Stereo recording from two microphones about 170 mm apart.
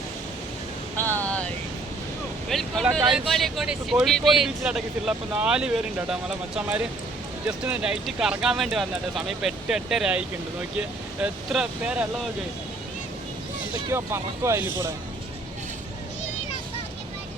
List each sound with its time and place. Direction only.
0.9 s a sound: 10° left (ahead or behind)
2.5 s speech: centre (ahead or behind)
13.9 s speech: 15° right (ahead or behind)